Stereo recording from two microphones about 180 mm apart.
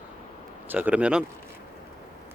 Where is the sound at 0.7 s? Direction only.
10° right (ahead or behind).